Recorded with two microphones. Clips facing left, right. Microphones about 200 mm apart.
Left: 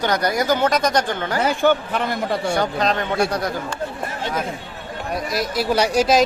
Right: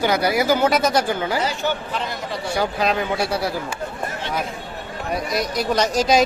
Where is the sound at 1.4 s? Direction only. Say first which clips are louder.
Left 6 dB; 55° left (ahead or behind).